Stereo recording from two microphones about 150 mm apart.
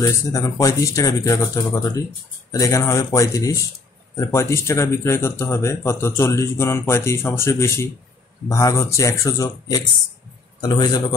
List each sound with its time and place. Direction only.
0.0 s speech: 20° left (ahead or behind)